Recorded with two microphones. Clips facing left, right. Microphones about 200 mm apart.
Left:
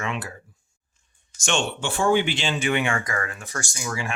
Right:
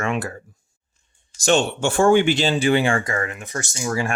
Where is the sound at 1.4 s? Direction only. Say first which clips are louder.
Right 7 dB; 40° right (ahead or behind).